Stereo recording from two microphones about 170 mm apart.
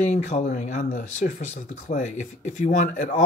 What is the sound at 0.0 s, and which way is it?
Speech, 45° left (ahead or behind).